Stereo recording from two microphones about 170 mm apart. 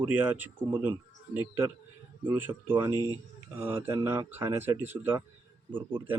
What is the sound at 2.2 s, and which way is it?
Speech, 10° right (ahead or behind).